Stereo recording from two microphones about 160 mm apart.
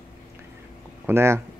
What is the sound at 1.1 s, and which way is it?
Speech, 15° right (ahead or behind).